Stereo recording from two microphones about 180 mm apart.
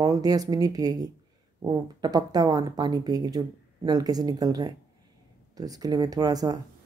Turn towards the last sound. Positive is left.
turn(degrees=-20)  # may be behind; listen again after turning